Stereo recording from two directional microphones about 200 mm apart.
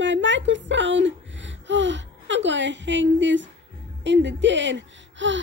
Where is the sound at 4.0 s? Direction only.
65° right (ahead or behind).